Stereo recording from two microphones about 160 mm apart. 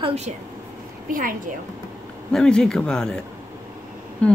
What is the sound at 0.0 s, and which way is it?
Speech, 40° right (ahead or behind).